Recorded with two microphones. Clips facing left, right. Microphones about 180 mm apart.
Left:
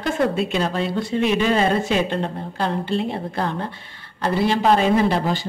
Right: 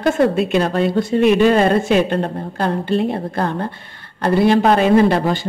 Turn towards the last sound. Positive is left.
turn(degrees=-60)  # may be behind; listen again after turning